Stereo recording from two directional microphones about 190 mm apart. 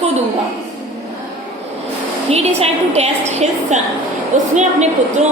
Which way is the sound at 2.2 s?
35° right (ahead or behind).